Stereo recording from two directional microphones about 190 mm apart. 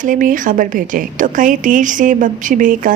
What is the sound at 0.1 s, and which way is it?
A woman's voice, 45° right (ahead or behind).